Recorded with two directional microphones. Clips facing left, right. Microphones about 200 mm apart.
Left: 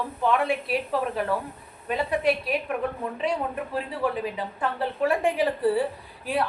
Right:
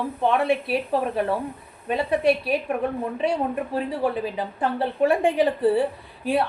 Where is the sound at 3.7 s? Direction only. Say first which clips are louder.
Right 2 dB; 25° right (ahead or behind).